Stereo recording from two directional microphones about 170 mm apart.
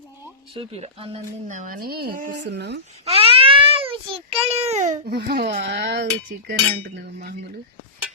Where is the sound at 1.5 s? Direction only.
50° right (ahead or behind).